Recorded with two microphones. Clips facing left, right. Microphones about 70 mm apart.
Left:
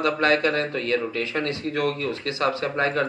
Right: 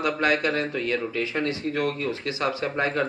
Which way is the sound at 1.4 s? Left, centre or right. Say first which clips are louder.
Left 1 dB; right.